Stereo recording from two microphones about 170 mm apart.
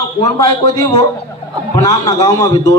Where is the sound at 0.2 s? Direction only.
20° left (ahead or behind).